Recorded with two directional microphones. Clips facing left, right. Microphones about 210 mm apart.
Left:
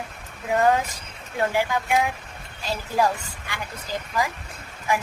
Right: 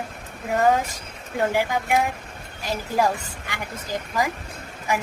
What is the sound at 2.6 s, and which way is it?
A woman's voice, 15° right (ahead or behind).